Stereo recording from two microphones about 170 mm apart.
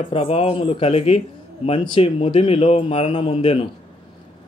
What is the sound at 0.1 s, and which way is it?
A man's voice, 35° left (ahead or behind).